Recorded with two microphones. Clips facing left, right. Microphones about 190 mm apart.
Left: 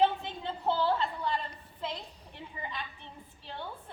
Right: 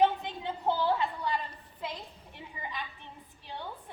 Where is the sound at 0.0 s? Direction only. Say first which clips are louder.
Right 1 dB; 15° right (ahead or behind).